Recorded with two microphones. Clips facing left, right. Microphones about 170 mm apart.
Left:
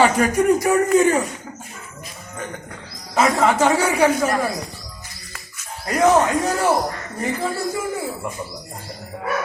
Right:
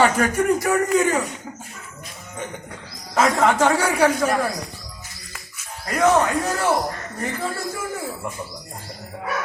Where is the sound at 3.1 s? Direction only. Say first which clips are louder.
Left 1 dB; 5° left (ahead or behind).